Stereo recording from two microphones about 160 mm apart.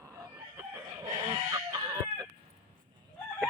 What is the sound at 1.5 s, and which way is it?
Chicken, 25° right (ahead or behind).